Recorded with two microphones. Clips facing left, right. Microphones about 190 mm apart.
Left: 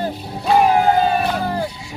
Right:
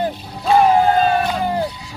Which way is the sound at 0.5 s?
15° left (ahead or behind).